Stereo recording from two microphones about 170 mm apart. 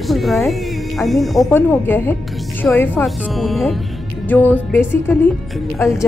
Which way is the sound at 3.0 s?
Centre (ahead or behind).